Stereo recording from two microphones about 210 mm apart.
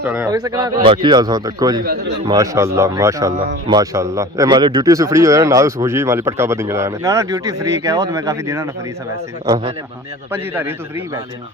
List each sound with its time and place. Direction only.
0.0 s a man's voice: 10° right (ahead or behind)
10.3 s a man's voice: 10° right (ahead or behind)